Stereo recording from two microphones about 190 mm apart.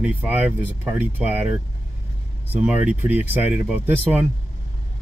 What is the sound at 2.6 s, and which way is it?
Speech, 5° right (ahead or behind).